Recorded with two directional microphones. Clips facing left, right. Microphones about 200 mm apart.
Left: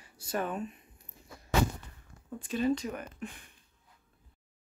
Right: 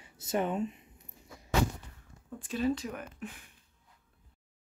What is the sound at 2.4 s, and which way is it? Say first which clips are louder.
Speech: left 1 dB; centre (ahead or behind).